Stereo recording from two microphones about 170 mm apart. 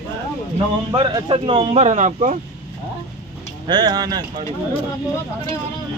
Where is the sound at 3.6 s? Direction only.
25° right (ahead or behind).